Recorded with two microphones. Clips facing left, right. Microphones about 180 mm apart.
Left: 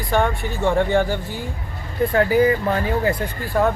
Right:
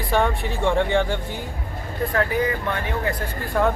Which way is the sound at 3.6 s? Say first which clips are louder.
Left 2 dB; 5° left (ahead or behind).